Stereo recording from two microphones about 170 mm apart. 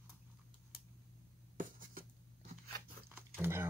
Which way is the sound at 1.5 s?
55° right (ahead or behind).